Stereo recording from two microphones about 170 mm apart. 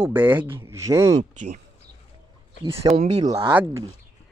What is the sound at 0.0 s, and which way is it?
A child's voice, 10° right (ahead or behind).